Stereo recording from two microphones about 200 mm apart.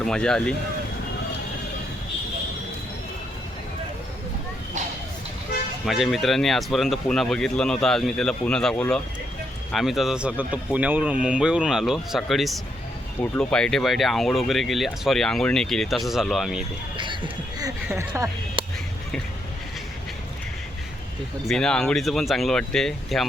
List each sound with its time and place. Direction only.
0.0 s speech: 5° left (ahead or behind)
5.8 s speech: centre (ahead or behind)
17.9 s speech: 15° right (ahead or behind)
21.4 s speech: 5° left (ahead or behind)